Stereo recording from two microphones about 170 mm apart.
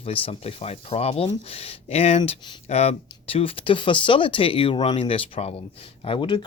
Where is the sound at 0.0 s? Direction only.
35° left (ahead or behind).